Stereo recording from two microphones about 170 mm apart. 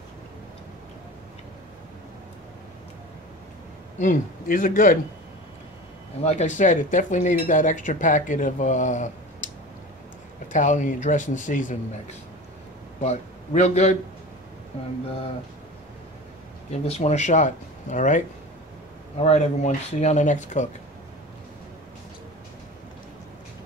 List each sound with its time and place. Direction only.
4.0 s speech: 50° left (ahead or behind)
6.2 s speech: 45° left (ahead or behind)
10.5 s speech: 45° left (ahead or behind)
13.0 s a man's voice: 40° left (ahead or behind)
16.8 s speech: 40° left (ahead or behind)